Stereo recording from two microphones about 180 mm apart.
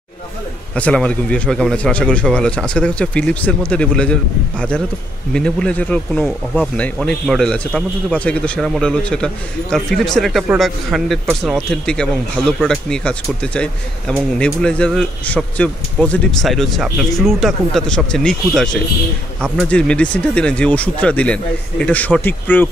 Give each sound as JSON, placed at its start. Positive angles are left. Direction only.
{"t": 0.7, "sound": "speech", "side_deg": 5}